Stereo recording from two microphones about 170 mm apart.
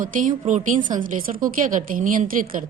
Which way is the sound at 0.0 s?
50° right (ahead or behind).